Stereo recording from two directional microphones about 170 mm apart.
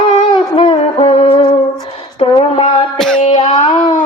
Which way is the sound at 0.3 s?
30° left (ahead or behind).